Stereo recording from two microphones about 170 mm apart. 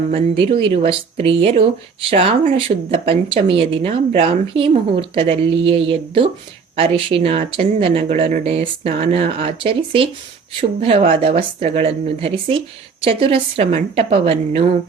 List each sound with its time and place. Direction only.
0.1 s speech: 35° right (ahead or behind)